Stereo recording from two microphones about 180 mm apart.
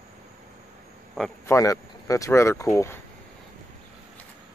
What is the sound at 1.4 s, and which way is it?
Speech, 15° left (ahead or behind).